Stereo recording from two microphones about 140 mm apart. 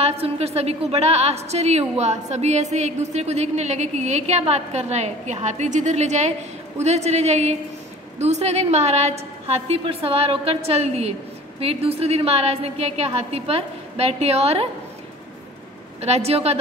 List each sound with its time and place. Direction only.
0.0 s a woman's voice: 50° right (ahead or behind)
16.0 s a woman's voice: 50° right (ahead or behind)